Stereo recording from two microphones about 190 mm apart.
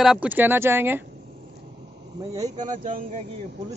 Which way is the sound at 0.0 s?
5° right (ahead or behind).